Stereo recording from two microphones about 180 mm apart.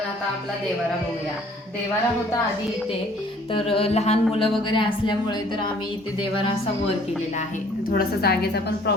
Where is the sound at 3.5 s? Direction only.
30° left (ahead or behind).